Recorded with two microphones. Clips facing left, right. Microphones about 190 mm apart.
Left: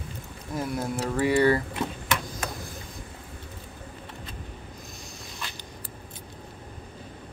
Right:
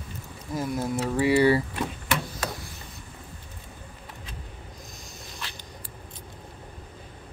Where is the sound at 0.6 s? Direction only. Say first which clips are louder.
Right 1 dB; 5° right (ahead or behind).